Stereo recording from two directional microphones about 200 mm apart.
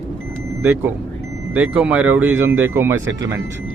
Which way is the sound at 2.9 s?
65° right (ahead or behind).